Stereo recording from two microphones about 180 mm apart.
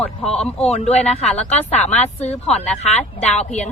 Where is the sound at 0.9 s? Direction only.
35° left (ahead or behind).